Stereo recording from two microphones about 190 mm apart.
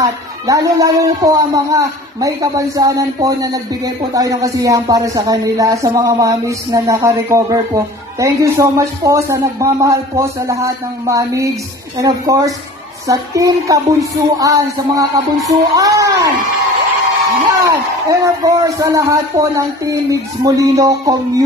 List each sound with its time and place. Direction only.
0.0 s a woman's voice: 15° right (ahead or behind)
17.5 s a woman's voice: 15° right (ahead or behind)